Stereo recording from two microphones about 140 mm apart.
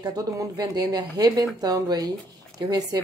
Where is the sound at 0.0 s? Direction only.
25° right (ahead or behind).